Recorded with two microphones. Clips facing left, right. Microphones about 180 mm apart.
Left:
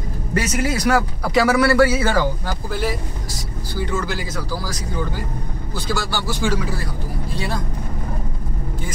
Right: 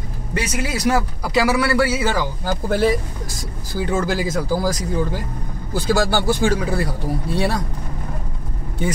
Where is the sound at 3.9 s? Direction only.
50° right (ahead or behind).